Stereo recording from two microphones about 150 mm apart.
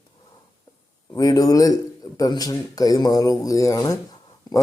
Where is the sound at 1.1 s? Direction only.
25° left (ahead or behind).